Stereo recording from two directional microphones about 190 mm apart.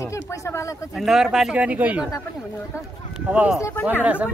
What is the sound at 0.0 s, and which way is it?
Speech, 15° left (ahead or behind).